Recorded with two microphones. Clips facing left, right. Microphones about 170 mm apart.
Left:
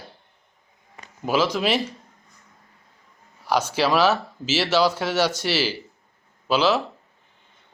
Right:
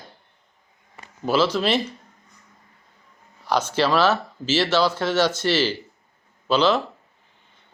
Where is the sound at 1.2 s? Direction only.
10° left (ahead or behind).